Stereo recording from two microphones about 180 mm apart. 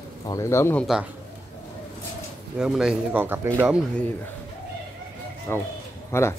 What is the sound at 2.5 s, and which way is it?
Speech, 5° right (ahead or behind).